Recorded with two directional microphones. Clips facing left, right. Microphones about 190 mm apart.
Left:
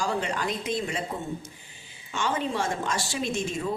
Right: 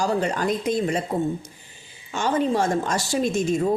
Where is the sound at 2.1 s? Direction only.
40° right (ahead or behind).